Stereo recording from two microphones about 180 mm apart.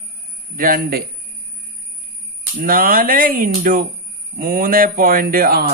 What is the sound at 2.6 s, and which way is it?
Speech, 50° right (ahead or behind).